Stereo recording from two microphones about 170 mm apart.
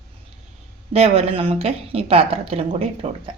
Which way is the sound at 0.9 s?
35° right (ahead or behind).